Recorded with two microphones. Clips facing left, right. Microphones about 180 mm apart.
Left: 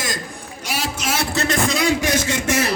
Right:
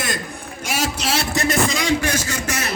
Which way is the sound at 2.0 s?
20° left (ahead or behind).